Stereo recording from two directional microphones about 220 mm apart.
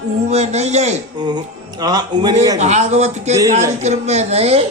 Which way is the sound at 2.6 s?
30° right (ahead or behind).